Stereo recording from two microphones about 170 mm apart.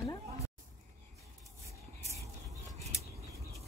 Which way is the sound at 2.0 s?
40° right (ahead or behind).